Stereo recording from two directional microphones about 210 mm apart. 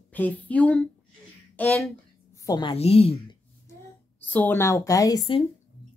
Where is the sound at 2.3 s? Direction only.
15° left (ahead or behind).